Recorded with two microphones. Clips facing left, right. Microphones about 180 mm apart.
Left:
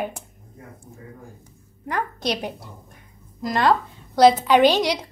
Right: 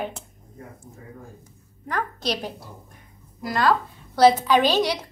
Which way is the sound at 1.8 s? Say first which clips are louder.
Left 2 dB; 15° left (ahead or behind).